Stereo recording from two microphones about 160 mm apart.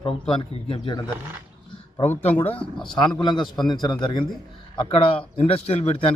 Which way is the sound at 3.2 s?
30° left (ahead or behind).